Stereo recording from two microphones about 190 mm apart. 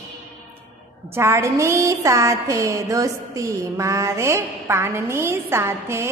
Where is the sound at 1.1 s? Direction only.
15° right (ahead or behind).